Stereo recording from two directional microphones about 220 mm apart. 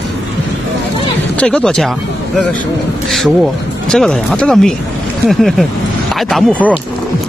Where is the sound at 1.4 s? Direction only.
5° left (ahead or behind).